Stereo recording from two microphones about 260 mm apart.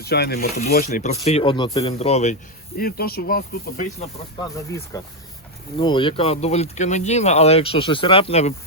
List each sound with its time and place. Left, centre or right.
0.0 s speech: left
0.3 s speech: left
4.4 s speech: centre